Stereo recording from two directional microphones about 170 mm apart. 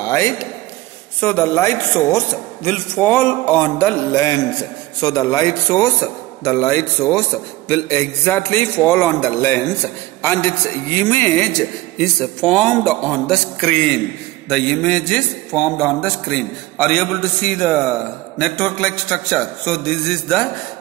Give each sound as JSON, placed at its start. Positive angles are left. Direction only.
{"t": 0.0, "sound": "a man's voice", "side_deg": 15}